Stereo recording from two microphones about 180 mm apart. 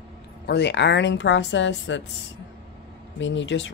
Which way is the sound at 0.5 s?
75° left (ahead or behind).